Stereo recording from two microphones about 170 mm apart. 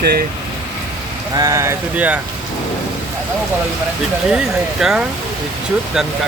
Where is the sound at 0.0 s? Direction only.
65° right (ahead or behind).